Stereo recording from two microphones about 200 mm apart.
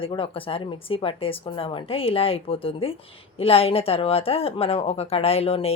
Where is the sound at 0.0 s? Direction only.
25° left (ahead or behind).